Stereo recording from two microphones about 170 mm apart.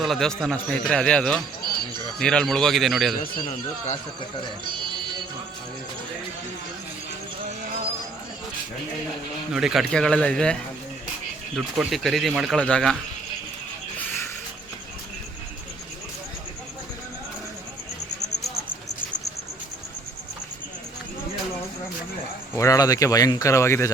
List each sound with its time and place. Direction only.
0.0 s speech: centre (ahead or behind)
9.5 s speech: 5° right (ahead or behind)
22.5 s speech: 20° left (ahead or behind)